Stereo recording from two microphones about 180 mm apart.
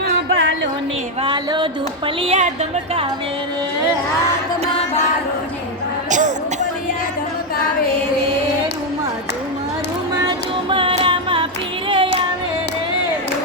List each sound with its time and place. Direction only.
0.3 s music: 90° right
1.2 s music: 25° right (ahead or behind)
2.2 s a woman's voice: 35° right (ahead or behind)
6.1 s music: 45° right (ahead or behind)
10.2 s music: 30° right (ahead or behind)
11.9 s child singing: 30° right (ahead or behind)